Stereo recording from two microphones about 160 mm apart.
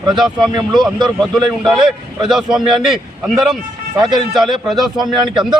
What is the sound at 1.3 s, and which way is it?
A man's voice, centre (ahead or behind).